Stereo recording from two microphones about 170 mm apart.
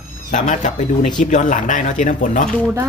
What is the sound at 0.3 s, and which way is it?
Speech, 45° left (ahead or behind).